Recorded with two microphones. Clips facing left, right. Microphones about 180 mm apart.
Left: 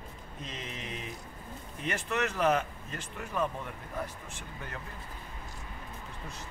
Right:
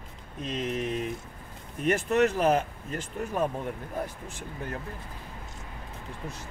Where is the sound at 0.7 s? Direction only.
55° right (ahead or behind).